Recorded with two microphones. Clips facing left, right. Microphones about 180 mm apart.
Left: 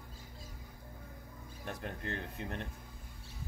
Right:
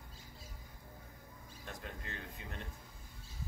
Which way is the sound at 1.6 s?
60° left (ahead or behind).